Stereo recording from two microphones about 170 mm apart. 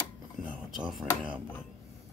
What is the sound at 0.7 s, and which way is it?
Speech, centre (ahead or behind).